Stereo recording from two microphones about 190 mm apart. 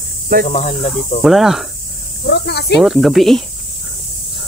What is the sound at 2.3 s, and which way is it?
Speech, 60° left (ahead or behind).